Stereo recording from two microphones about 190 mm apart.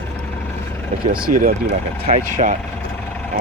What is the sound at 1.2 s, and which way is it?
Speech, 45° right (ahead or behind).